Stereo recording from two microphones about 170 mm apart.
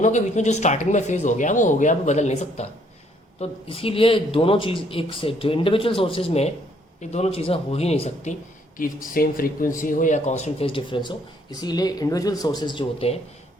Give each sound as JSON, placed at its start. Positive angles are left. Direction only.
{"t": 0.0, "sound": "speech", "side_deg": 45}
{"t": 8.8, "sound": "speech", "side_deg": 55}